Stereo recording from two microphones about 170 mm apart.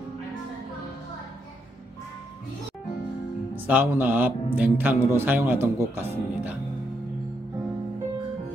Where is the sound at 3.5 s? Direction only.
10° right (ahead or behind).